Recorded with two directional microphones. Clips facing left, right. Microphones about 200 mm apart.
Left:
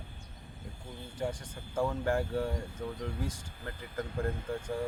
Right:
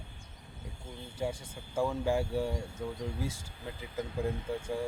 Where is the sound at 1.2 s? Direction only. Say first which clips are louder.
Even; 10° right (ahead or behind).